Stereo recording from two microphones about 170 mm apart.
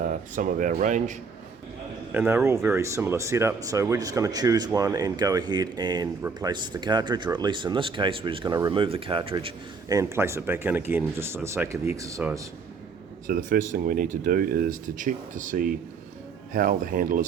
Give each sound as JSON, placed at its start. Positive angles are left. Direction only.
{"t": 0.0, "sound": "speech", "side_deg": -50}
{"t": 2.1, "sound": "speech", "side_deg": -10}
{"t": 9.9, "sound": "speech", "side_deg": -15}
{"t": 13.2, "sound": "speech", "side_deg": -55}